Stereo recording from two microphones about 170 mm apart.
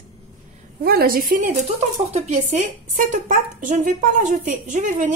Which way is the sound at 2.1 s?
40° right (ahead or behind).